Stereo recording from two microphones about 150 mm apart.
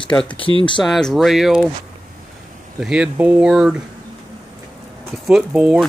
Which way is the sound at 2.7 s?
5° right (ahead or behind).